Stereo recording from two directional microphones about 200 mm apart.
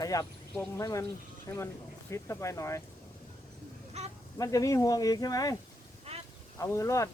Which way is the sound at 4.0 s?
35° right (ahead or behind).